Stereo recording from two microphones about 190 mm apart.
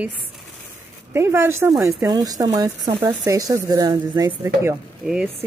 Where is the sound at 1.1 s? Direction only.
15° right (ahead or behind).